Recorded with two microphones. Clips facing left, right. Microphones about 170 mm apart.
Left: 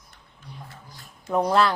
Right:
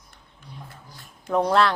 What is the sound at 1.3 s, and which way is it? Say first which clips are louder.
Speech: right 1 dB; centre (ahead or behind).